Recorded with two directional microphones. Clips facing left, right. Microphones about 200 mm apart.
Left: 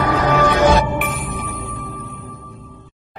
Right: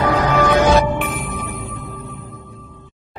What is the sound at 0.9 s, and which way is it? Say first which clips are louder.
Music: even; centre (ahead or behind).